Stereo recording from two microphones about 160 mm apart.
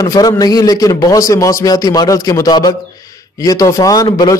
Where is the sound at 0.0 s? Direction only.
20° left (ahead or behind).